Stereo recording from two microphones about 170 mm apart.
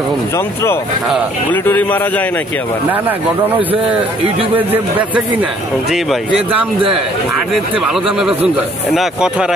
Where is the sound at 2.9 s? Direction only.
10° right (ahead or behind).